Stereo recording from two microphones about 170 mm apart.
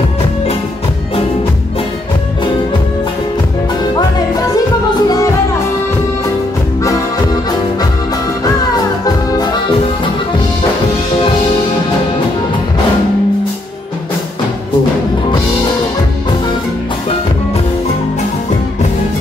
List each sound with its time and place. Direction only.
4.6 s music: 20° left (ahead or behind)
9.0 s music: 25° left (ahead or behind)